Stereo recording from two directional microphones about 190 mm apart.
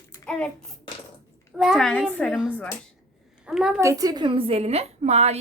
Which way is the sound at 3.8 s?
15° right (ahead or behind).